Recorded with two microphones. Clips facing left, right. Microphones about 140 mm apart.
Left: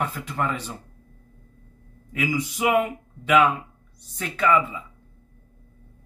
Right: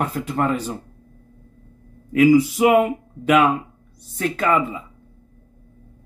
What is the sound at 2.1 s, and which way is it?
Speech, 50° right (ahead or behind).